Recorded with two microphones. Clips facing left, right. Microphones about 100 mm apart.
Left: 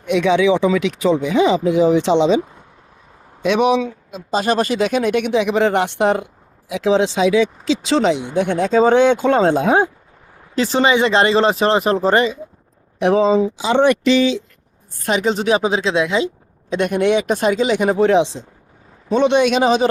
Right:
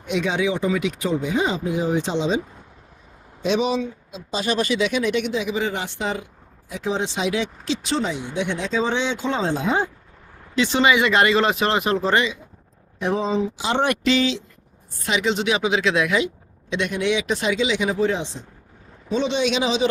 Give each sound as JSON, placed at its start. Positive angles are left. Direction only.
{"t": 0.0, "sound": "speech", "side_deg": 70}
{"t": 3.4, "sound": "speech", "side_deg": 60}
{"t": 4.1, "sound": "speech", "side_deg": 45}
{"t": 6.7, "sound": "speech", "side_deg": 90}
{"t": 8.3, "sound": "speech", "side_deg": 50}
{"t": 10.5, "sound": "speech", "side_deg": 40}
{"t": 13.0, "sound": "speech", "side_deg": 75}
{"t": 14.9, "sound": "speech", "side_deg": 45}
{"t": 16.6, "sound": "speech", "side_deg": 45}
{"t": 19.1, "sound": "speech", "side_deg": 55}